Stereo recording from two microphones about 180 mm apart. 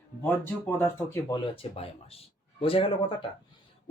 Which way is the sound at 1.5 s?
30° left (ahead or behind).